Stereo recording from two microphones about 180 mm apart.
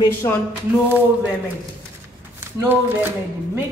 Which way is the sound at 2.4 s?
10° right (ahead or behind).